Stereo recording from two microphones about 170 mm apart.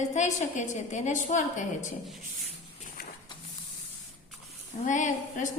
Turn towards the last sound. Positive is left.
turn(degrees=45)  # may be behind; listen again after turning